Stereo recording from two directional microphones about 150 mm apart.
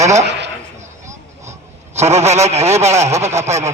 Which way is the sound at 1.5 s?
45° right (ahead or behind).